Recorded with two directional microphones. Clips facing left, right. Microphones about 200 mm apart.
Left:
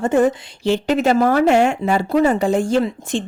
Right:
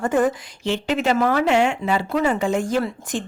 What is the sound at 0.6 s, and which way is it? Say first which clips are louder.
Speech: left 5 dB; 40° left (ahead or behind).